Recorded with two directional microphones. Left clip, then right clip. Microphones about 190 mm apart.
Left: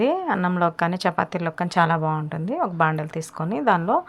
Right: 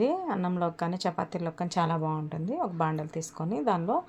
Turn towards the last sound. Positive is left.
turn(degrees=15)  # may be behind; listen again after turning